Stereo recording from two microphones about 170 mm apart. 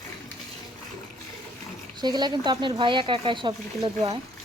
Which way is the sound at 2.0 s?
25° right (ahead or behind).